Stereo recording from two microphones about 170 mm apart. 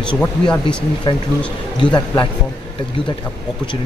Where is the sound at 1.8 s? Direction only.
25° left (ahead or behind).